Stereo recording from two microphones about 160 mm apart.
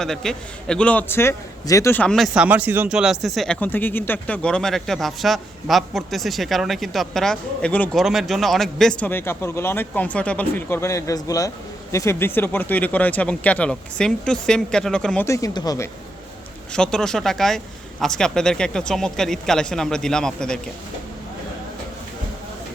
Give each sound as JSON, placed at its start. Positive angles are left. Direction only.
{"t": 0.0, "sound": "a man's voice", "side_deg": 5}
{"t": 15.3, "sound": "speech", "side_deg": 20}
{"t": 16.7, "sound": "a man's voice", "side_deg": 5}